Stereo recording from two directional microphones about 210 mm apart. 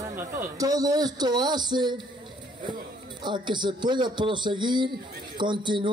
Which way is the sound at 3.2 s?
20° right (ahead or behind).